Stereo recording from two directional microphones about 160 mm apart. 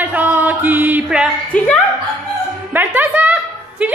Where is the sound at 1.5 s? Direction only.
10° left (ahead or behind).